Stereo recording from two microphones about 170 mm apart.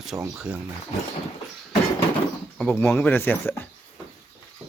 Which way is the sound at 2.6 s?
10° left (ahead or behind).